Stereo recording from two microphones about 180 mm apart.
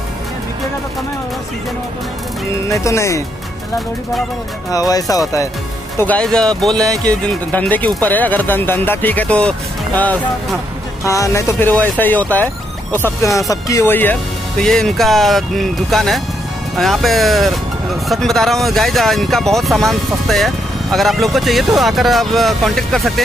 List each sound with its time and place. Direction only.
2.5 s speech: 15° left (ahead or behind)
4.6 s speech: 20° left (ahead or behind)
5.9 s speech: 10° left (ahead or behind)
11.1 s speech: 15° left (ahead or behind); by 23.2 s centre (ahead or behind)